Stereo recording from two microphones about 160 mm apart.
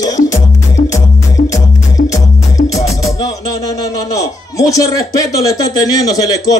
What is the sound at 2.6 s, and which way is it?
Music, 55° left (ahead or behind).